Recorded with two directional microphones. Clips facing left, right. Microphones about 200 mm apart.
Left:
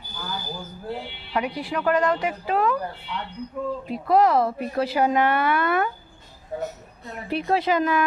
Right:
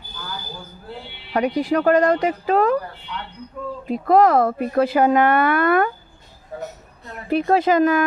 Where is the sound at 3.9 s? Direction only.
50° right (ahead or behind).